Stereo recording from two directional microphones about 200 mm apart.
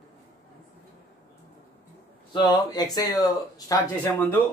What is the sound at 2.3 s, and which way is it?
Speech, 20° left (ahead or behind).